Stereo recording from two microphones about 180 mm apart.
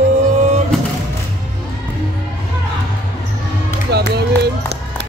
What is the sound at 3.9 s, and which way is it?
Run, 65° right (ahead or behind).